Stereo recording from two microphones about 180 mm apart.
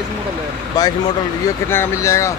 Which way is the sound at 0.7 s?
20° left (ahead or behind).